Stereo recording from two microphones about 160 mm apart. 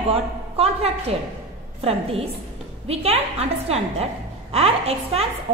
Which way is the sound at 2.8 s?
40° right (ahead or behind).